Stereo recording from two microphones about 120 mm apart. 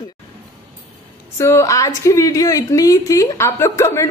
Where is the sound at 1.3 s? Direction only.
25° left (ahead or behind).